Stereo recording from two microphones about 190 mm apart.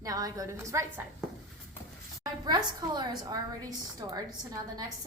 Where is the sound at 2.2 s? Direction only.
20° right (ahead or behind).